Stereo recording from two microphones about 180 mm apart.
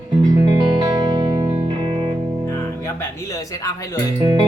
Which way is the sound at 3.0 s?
20° left (ahead or behind).